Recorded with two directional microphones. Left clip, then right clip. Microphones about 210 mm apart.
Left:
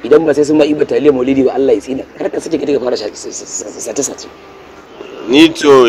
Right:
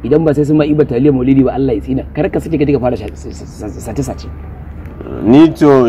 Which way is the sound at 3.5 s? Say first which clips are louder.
Left 3 dB; 25° left (ahead or behind).